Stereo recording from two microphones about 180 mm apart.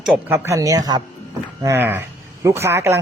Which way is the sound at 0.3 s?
15° right (ahead or behind).